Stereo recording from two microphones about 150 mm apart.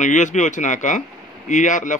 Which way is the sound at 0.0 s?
55° left (ahead or behind).